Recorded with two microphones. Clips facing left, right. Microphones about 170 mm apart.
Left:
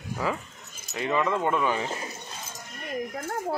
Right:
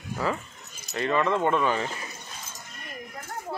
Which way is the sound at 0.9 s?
10° left (ahead or behind).